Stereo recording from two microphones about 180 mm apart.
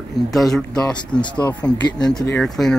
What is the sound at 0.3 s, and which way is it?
Speech, centre (ahead or behind).